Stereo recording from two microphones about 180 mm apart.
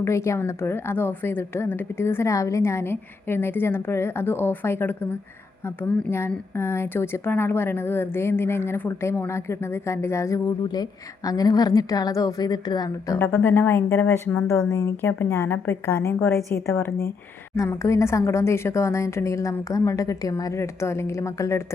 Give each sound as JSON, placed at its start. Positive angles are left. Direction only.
{"t": 0.0, "sound": "a woman's voice", "side_deg": 15}
{"t": 13.1, "sound": "a woman's voice", "side_deg": 10}